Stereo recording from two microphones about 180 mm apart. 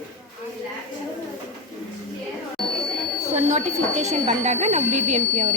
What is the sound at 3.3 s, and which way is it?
Speech, 40° right (ahead or behind).